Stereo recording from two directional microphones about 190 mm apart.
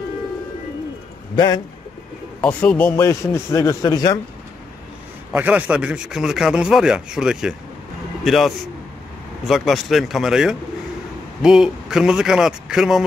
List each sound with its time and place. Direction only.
1.3 s speech: 20° left (ahead or behind)
2.4 s a man's voice: 10° left (ahead or behind)
5.3 s a man's voice: 10° right (ahead or behind)